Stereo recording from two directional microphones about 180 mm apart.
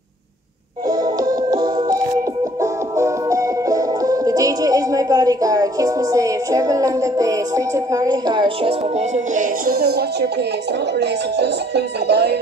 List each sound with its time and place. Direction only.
0.8 s music: 20° right (ahead or behind); by 12.4 s 70° right (ahead or behind)